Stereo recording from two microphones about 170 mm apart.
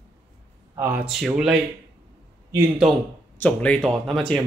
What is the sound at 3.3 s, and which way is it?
Speech, 10° left (ahead or behind).